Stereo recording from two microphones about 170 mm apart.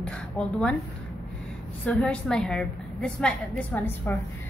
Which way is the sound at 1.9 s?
5° left (ahead or behind).